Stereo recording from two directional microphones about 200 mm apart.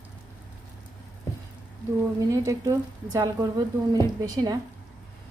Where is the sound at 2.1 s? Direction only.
15° right (ahead or behind).